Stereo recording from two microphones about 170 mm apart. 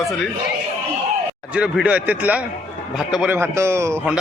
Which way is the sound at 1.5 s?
5° right (ahead or behind).